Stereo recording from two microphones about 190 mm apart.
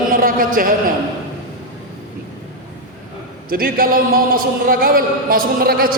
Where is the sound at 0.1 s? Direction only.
45° right (ahead or behind).